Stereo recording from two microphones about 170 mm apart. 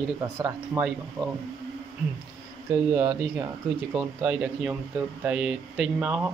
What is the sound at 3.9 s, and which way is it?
Speech, 5° right (ahead or behind).